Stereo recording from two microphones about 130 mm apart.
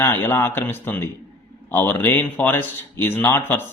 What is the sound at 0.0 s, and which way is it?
A man's voice, 20° left (ahead or behind).